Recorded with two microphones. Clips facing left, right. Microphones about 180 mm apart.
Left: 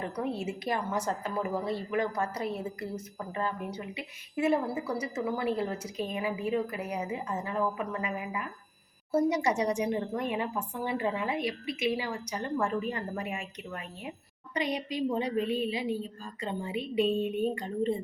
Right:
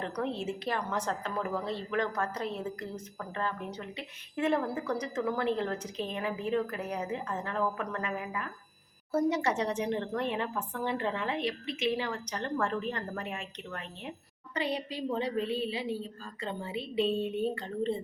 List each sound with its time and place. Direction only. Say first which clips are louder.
0.0 s a woman's voice: left 1 dB; 10° left (ahead or behind)